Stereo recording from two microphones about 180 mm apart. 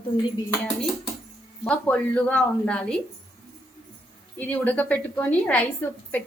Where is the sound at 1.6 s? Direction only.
10° left (ahead or behind).